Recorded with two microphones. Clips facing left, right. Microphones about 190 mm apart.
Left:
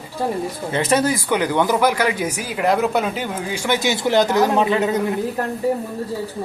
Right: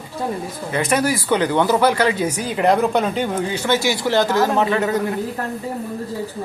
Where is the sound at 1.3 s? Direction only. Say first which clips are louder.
Right 3 dB; 10° left (ahead or behind).